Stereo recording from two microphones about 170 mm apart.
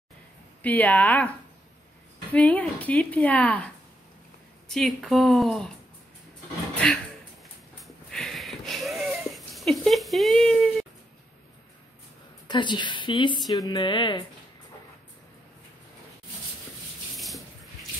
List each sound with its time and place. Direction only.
0.6 s a woman's voice: 10° left (ahead or behind)
2.3 s a woman's voice: 10° left (ahead or behind)
7.8 s a sound: centre (ahead or behind)
12.4 s speech: 25° left (ahead or behind)